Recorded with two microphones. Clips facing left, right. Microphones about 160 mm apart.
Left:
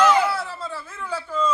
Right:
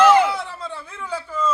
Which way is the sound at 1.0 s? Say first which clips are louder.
Even; 10° right (ahead or behind).